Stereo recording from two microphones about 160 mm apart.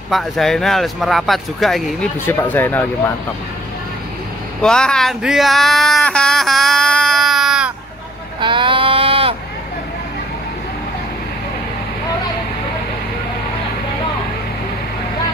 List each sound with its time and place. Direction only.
0.1 s speech: centre (ahead or behind)
2.2 s speech: 15° left (ahead or behind)
4.6 s speech: 5° left (ahead or behind)
8.4 s a sound: 30° right (ahead or behind)